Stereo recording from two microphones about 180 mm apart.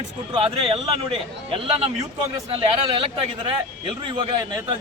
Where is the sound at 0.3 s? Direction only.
30° right (ahead or behind).